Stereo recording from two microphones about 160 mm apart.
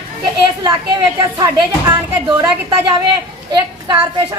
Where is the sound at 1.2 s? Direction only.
20° right (ahead or behind).